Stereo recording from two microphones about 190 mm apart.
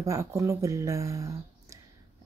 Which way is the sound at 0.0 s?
15° right (ahead or behind).